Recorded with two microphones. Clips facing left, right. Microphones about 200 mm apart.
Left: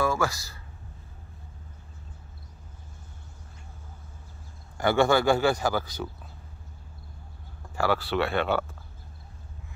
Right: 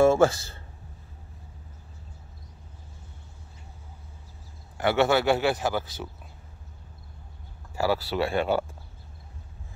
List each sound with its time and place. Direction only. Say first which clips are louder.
0.0 s speech: right 8 dB; 30° right (ahead or behind)
4.7 s speech: even; 5° right (ahead or behind)
7.7 s speech: even; 10° right (ahead or behind)